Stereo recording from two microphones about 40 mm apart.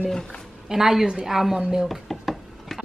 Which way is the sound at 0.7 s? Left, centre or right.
Centre.